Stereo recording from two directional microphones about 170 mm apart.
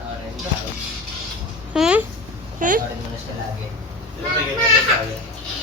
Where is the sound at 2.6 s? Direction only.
50° right (ahead or behind).